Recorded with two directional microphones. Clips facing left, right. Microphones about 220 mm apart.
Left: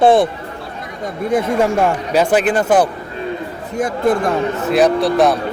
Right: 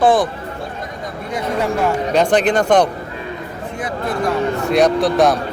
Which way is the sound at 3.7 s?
50° left (ahead or behind).